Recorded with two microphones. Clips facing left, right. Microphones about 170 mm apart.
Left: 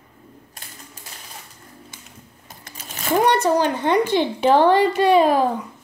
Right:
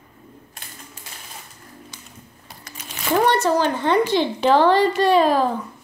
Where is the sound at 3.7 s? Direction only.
15° left (ahead or behind).